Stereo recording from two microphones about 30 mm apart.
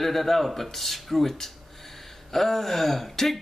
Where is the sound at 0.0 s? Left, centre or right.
Centre.